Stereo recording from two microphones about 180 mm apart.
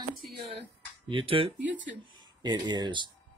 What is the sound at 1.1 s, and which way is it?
Speech, 30° right (ahead or behind).